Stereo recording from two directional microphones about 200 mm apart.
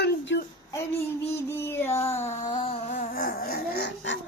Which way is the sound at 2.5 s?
30° left (ahead or behind).